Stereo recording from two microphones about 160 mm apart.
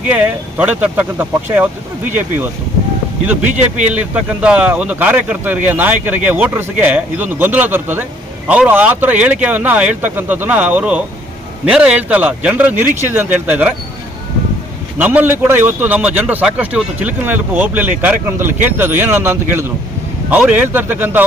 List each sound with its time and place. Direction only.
0.0 s a man's voice: 10° right (ahead or behind)
3.5 s speech: 50° right (ahead or behind)
3.9 s a man's voice: 10° right (ahead or behind)
14.9 s a man's voice: 10° right (ahead or behind)